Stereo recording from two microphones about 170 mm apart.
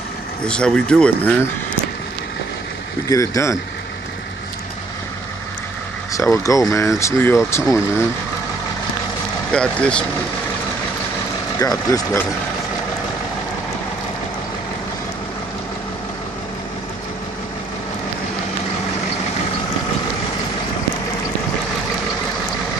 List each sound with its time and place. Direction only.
0.5 s speech: 5° left (ahead or behind)
3.1 s speech: 20° left (ahead or behind)
6.1 s speech: 20° left (ahead or behind)
9.5 s speech: 5° left (ahead or behind)
11.6 s speech: 20° left (ahead or behind)